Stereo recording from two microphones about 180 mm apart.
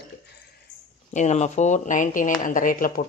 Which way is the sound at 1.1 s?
40° left (ahead or behind).